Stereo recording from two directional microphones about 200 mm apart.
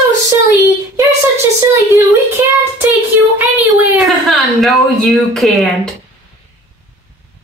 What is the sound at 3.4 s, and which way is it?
Speech, 10° right (ahead or behind).